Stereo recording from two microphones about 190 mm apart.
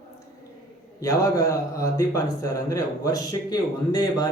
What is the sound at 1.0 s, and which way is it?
Speech, 15° left (ahead or behind).